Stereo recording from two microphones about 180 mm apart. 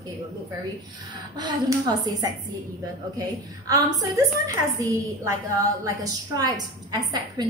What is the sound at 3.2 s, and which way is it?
A woman's voice, 20° right (ahead or behind).